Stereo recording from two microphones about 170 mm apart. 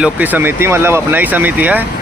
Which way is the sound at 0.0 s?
10° right (ahead or behind).